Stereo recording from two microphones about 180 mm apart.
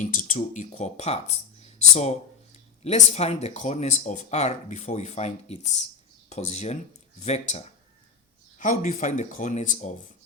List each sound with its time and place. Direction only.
0.0 s speech: 45° left (ahead or behind)